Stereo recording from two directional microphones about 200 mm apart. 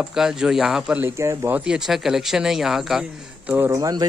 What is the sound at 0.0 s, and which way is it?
Speech, centre (ahead or behind).